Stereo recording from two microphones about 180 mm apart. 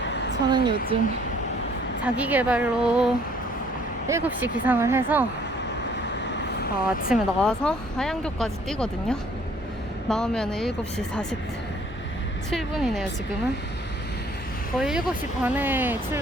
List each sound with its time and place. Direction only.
0.0 s a sound: 80° left
0.5 s a woman's voice: 25° right (ahead or behind)
2.1 s speech: 10° right (ahead or behind)
4.1 s speech: 15° right (ahead or behind)
6.3 s vehicle: 60° left (ahead or behind)
7.1 s speech: 5° left (ahead or behind)
12.5 s speech: centre (ahead or behind)
14.8 s speech: 5° right (ahead or behind)